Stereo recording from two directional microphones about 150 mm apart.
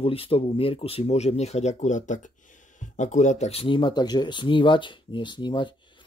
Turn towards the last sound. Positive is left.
turn(degrees=30)  # may be behind; listen again after turning